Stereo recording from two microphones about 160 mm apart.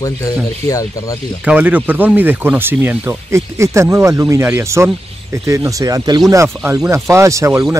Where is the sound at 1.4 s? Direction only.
10° right (ahead or behind).